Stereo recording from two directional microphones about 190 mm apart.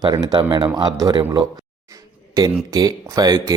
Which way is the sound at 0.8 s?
20° right (ahead or behind).